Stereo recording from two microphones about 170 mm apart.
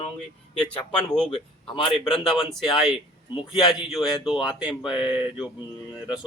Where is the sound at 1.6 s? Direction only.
30° left (ahead or behind).